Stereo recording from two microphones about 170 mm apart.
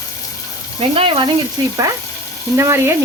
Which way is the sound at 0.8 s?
30° right (ahead or behind).